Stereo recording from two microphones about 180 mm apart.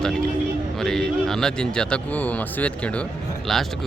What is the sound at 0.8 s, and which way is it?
Speech, 5° left (ahead or behind).